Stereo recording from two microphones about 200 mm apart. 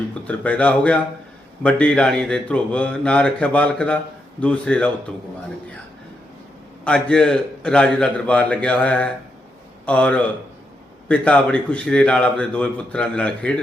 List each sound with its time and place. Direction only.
0.1 s speech: 5° left (ahead or behind)
6.8 s a man's voice: 5° left (ahead or behind)